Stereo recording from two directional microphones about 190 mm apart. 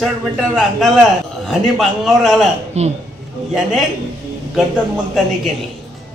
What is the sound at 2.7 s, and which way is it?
Speech, 35° right (ahead or behind).